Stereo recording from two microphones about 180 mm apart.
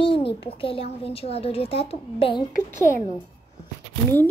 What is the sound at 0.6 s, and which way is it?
A woman's voice, 30° left (ahead or behind).